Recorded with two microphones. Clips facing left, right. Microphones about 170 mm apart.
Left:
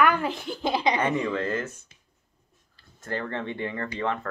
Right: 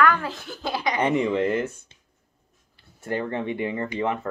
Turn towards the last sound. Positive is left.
turn(degrees=-20)  # may be behind; listen again after turning